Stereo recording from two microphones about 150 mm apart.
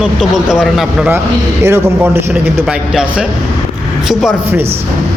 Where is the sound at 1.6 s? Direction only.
15° right (ahead or behind).